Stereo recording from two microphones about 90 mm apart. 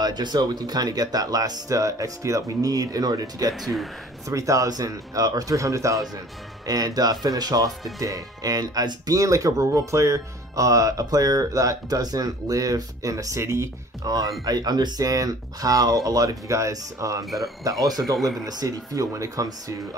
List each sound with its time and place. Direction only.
0.0 s speech: 55° right (ahead or behind); by 13.7 s 30° right (ahead or behind)
14.0 s speech: 45° right (ahead or behind)